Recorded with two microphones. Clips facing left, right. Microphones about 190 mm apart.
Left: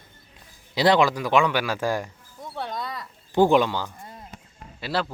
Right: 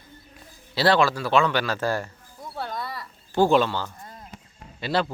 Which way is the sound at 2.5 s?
5° right (ahead or behind).